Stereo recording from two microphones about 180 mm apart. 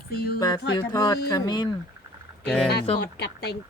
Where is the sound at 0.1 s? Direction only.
60° left (ahead or behind).